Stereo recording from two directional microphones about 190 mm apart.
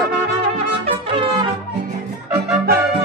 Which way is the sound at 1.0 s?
30° right (ahead or behind).